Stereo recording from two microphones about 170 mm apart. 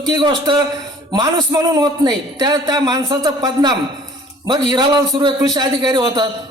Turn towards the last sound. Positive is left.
turn(degrees=-25)  # may be behind; listen again after turning